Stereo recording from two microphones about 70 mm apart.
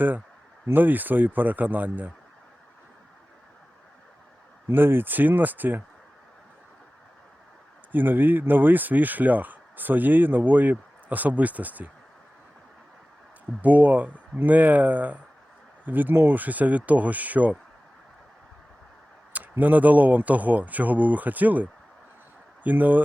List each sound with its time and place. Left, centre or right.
0.7 s speech: right
4.7 s speech: right
7.9 s speech: right
13.6 s speech: right
19.3 s speech: right